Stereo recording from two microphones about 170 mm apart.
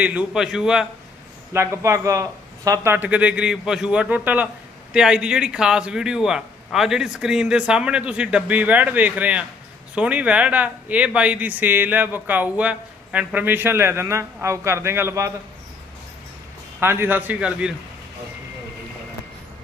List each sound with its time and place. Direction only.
0.0 s a man's voice: 10° right (ahead or behind)
1.5 s a man's voice: 15° right (ahead or behind)
16.8 s speech: 15° right (ahead or behind)